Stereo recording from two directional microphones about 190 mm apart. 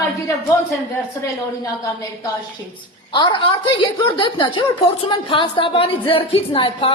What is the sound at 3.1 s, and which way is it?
A woman's voice, 25° left (ahead or behind).